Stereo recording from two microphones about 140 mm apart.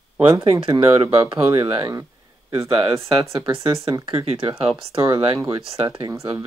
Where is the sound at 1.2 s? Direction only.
40° right (ahead or behind).